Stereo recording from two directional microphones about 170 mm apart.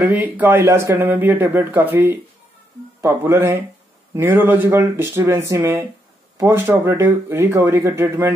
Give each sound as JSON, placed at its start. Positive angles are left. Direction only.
{"t": 0.1, "sound": "speech", "side_deg": -10}